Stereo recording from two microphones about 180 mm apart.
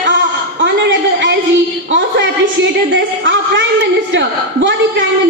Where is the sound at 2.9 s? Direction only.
90° right.